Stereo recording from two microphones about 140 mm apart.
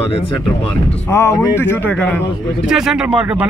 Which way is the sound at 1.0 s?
20° left (ahead or behind).